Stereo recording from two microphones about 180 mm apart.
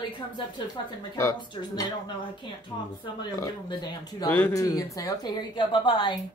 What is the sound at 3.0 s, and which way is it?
A woman's voice, 25° left (ahead or behind).